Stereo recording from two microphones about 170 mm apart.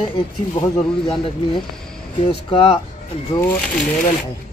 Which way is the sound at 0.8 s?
35° left (ahead or behind).